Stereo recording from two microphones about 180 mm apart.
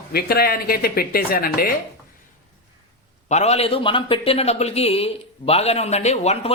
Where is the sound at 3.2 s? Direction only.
40° left (ahead or behind).